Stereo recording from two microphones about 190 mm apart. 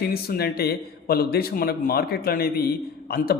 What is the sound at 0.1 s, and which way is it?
A man's voice, 55° left (ahead or behind).